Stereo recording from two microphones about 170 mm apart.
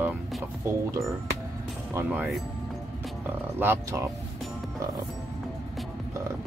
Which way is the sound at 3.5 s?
10° right (ahead or behind).